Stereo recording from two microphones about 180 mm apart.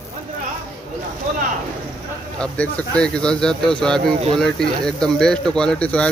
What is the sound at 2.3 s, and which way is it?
Speech, 5° left (ahead or behind).